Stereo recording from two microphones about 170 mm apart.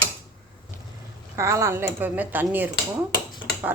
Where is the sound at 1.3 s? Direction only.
20° right (ahead or behind).